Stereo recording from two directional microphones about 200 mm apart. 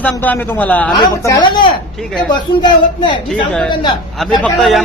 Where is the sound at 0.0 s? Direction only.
10° left (ahead or behind).